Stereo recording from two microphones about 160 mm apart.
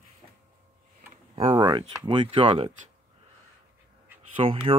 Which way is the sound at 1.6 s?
30° right (ahead or behind).